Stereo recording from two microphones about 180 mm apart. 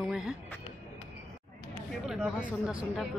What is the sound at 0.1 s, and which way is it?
Music, centre (ahead or behind).